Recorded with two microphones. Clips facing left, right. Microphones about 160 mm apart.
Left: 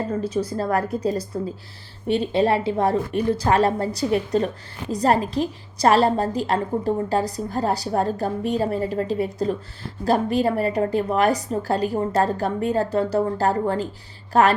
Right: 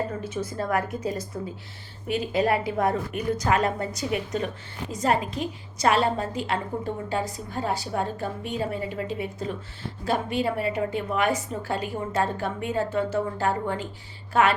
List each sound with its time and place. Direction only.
0.1 s a woman's voice: 35° left (ahead or behind)